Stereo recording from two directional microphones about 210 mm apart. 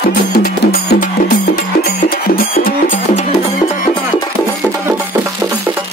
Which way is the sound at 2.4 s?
40° left (ahead or behind).